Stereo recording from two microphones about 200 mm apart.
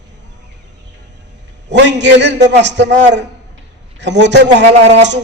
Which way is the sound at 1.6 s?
60° right (ahead or behind).